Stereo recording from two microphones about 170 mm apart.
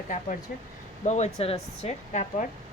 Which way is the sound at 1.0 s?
40° left (ahead or behind).